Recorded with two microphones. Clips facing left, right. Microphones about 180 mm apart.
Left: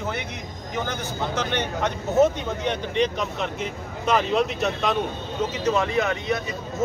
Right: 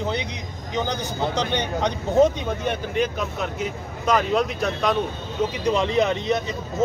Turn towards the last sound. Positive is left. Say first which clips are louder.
# right 3 dB
turn(degrees=-20)  # may be behind; listen again after turning